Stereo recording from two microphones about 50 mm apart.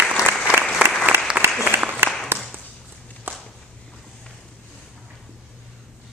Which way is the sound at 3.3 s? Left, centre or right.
Right.